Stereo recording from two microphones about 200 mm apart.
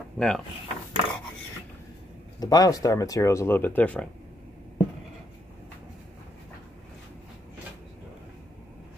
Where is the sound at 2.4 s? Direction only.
20° left (ahead or behind).